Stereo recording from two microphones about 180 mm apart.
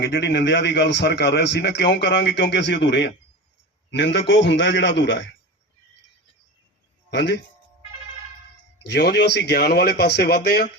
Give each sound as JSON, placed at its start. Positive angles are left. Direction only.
{"t": 0.0, "sound": "a man's voice", "side_deg": 70}
{"t": 7.1, "sound": "speech", "side_deg": 75}
{"t": 8.9, "sound": "a man's voice", "side_deg": 70}